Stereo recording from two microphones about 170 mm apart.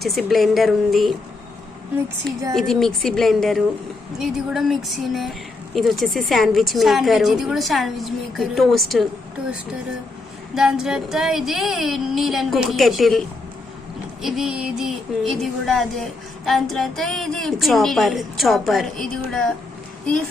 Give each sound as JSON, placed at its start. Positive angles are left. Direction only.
{"t": 0.0, "sound": "a woman's voice", "side_deg": 0}
{"t": 2.6, "sound": "a woman's voice", "side_deg": 0}
{"t": 10.5, "sound": "a woman's voice", "side_deg": -5}